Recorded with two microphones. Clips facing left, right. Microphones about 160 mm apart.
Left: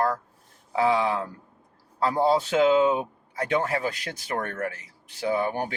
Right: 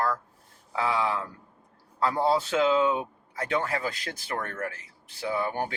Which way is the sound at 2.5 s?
25° left (ahead or behind).